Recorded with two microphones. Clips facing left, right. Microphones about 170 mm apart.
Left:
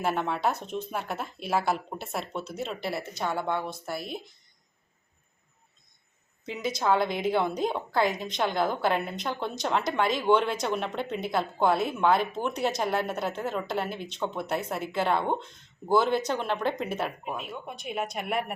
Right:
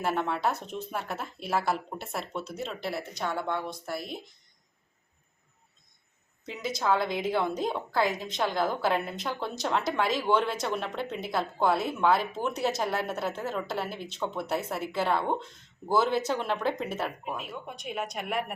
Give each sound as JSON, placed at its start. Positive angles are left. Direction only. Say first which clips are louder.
{"t": 0.0, "sound": "a woman's voice", "louder": "left 1 dB", "side_deg": 0}
{"t": 6.4, "sound": "a woman's voice", "louder": "left 2 dB", "side_deg": 0}